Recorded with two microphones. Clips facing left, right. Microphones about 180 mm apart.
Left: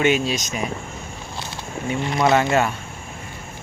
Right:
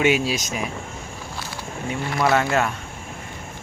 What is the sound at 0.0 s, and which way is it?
Speech, 10° right (ahead or behind).